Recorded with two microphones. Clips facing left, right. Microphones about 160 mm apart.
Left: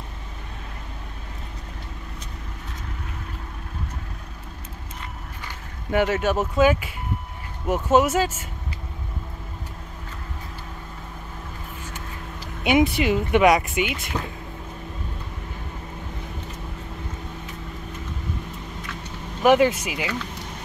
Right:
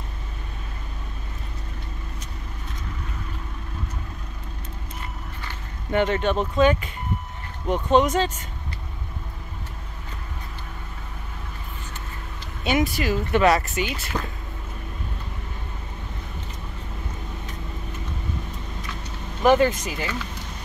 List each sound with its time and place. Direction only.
5.9 s speech: 5° left (ahead or behind)
12.6 s speech: 20° left (ahead or behind)
14.1 s speech: 5° right (ahead or behind)
19.4 s speech: 10° left (ahead or behind)